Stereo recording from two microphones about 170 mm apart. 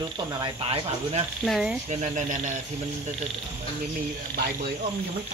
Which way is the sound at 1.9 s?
40° right (ahead or behind).